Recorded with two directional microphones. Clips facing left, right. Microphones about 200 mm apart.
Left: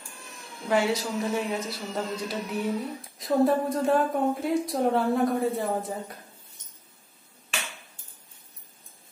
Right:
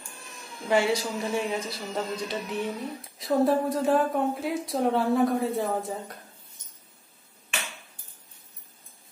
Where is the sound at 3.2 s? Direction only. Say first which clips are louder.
Even; centre (ahead or behind).